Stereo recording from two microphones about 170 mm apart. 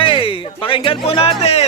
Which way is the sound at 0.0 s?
30° left (ahead or behind).